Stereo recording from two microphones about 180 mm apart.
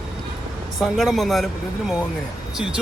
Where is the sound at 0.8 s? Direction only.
Centre (ahead or behind).